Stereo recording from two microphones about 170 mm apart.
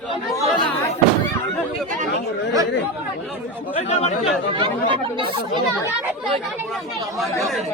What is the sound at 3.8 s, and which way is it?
Speech, 40° left (ahead or behind).